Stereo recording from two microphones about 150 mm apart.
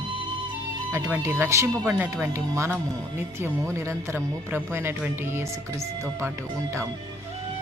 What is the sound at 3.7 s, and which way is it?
Speech, 15° right (ahead or behind).